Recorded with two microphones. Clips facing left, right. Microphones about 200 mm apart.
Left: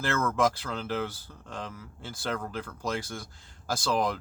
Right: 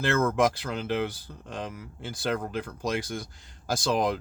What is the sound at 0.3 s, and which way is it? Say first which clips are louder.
Speech: right 2 dB; 15° right (ahead or behind).